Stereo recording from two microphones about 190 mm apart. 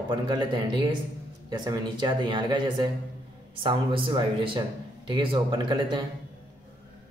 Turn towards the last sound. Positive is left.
turn(degrees=-25)  # may be behind; listen again after turning